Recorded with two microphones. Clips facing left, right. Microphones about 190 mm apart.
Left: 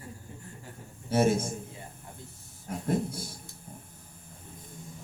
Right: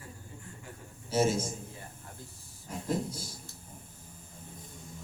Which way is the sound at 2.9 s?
55° left (ahead or behind).